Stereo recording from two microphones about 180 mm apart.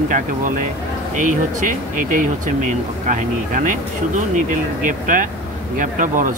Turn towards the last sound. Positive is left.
turn(degrees=-45)  # may be behind; listen again after turning